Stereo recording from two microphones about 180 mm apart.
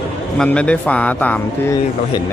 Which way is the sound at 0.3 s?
5° left (ahead or behind).